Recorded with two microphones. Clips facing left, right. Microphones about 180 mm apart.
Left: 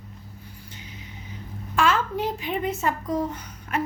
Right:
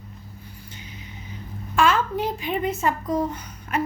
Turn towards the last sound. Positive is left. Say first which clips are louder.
# right 2 dB
turn(degrees=-10)  # may be behind; listen again after turning